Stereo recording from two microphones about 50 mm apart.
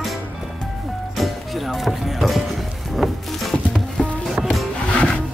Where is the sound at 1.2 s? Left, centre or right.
Centre.